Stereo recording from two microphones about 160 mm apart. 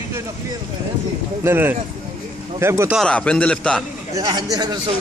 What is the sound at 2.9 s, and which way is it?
Speech, 5° left (ahead or behind).